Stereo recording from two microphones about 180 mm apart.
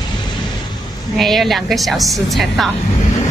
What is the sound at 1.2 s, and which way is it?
Speech, centre (ahead or behind).